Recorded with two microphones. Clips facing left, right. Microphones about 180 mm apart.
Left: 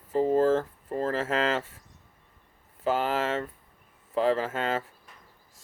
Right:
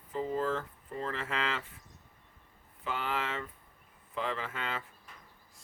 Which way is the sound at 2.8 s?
40° left (ahead or behind).